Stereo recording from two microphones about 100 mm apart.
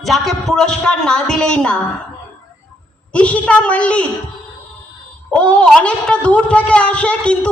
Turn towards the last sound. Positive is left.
turn(degrees=10)  # may be behind; listen again after turning